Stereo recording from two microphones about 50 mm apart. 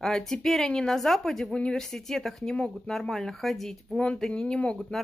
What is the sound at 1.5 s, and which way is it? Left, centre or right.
Speech, centre.